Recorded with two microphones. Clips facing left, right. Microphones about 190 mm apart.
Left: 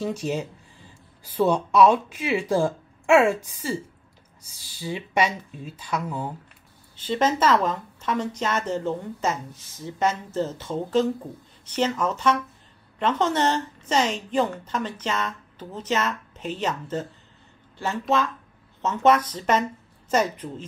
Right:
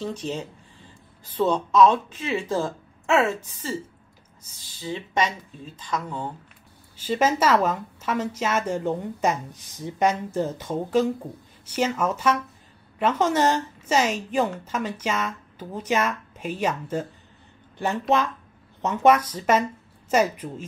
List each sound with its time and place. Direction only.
0.0 s speech: 10° left (ahead or behind)
7.0 s a woman's voice: 10° right (ahead or behind)
18.1 s a woman's voice: 15° right (ahead or behind)